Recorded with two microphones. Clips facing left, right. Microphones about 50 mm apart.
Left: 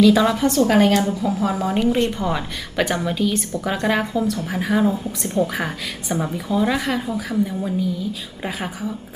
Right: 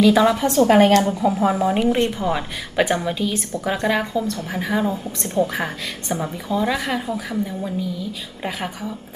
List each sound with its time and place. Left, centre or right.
0.0 s a woman's voice: centre
0.6 s speech: right
2.0 s a woman's voice: centre
3.8 s a woman's voice: centre